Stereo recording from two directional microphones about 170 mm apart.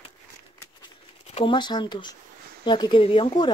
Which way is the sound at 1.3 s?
30° left (ahead or behind).